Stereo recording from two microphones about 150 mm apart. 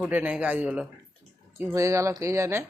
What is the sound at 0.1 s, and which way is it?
Speech, 10° right (ahead or behind).